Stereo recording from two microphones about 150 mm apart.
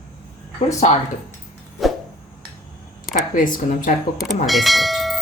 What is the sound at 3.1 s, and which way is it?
Speech, 60° left (ahead or behind).